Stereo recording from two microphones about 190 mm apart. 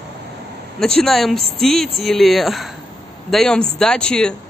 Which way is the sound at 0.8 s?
Centre (ahead or behind).